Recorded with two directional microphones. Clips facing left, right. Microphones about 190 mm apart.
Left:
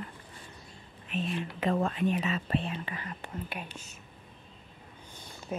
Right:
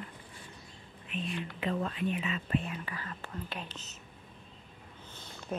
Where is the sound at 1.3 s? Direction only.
45° left (ahead or behind); by 4.0 s 10° left (ahead or behind).